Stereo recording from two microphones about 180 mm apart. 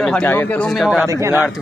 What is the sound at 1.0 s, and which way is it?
Speech, 15° right (ahead or behind).